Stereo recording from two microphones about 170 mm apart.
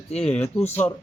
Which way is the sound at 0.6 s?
10° left (ahead or behind).